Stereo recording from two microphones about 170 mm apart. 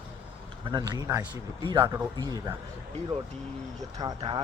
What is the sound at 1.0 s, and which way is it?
Speech, 10° right (ahead or behind).